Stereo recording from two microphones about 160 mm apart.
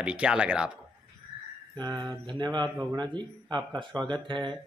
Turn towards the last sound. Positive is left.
turn(degrees=-30)  # may be behind; listen again after turning